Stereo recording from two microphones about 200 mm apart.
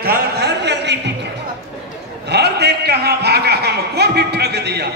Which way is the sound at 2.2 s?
55° right (ahead or behind).